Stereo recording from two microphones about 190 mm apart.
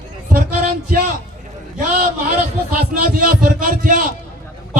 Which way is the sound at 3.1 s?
50° right (ahead or behind).